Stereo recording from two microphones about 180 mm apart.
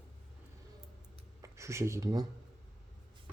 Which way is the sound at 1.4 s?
15° right (ahead or behind).